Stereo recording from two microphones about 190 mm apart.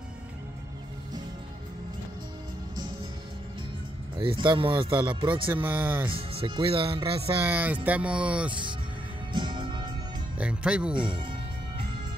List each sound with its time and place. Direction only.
4.2 s speech: 25° right (ahead or behind)
5.5 s speech: 10° right (ahead or behind)
6.0 s speech: 30° right (ahead or behind)
7.4 s speech: 10° right (ahead or behind)
8.5 s speech: 25° right (ahead or behind)
9.3 s music: 25° right (ahead or behind)
10.3 s speech: 5° right (ahead or behind)
11.0 s speech: 25° right (ahead or behind)